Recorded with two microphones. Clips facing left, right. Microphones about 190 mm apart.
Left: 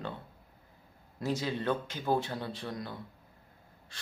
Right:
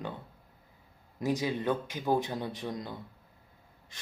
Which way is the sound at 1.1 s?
15° right (ahead or behind).